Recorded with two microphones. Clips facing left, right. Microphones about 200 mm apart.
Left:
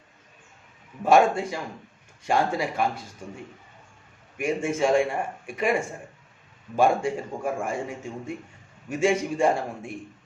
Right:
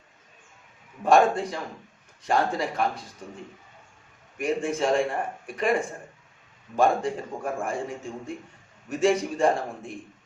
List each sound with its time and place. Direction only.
1.0 s a man's voice: 5° left (ahead or behind)
4.4 s a man's voice: 10° left (ahead or behind)
6.7 s a man's voice: 10° left (ahead or behind)